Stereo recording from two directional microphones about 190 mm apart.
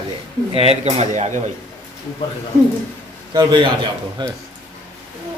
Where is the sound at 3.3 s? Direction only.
20° right (ahead or behind).